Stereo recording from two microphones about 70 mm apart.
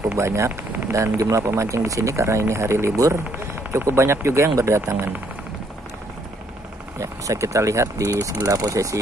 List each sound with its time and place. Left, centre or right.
0.1 s speech: right
7.0 s speech: right